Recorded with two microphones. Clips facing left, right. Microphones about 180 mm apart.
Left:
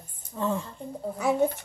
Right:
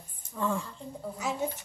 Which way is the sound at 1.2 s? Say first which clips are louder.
Left 9 dB; 60° left (ahead or behind).